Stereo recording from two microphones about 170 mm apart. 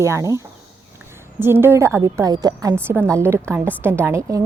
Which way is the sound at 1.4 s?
15° right (ahead or behind).